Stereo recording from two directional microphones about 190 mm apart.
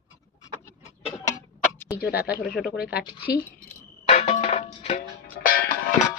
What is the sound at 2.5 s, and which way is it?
Speech, 5° left (ahead or behind).